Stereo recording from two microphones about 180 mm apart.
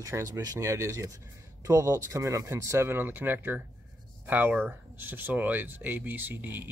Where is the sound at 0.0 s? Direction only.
15° right (ahead or behind).